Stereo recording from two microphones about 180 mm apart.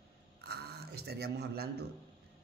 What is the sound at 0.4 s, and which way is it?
A man's voice, 60° right (ahead or behind).